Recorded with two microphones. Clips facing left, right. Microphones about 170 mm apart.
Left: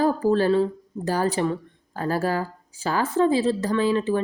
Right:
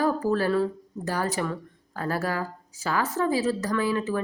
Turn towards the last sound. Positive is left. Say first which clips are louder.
# left 4 dB
turn(degrees=30)  # may be behind; listen again after turning